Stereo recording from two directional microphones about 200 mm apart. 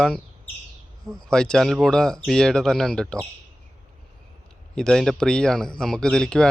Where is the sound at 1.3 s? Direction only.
5° left (ahead or behind).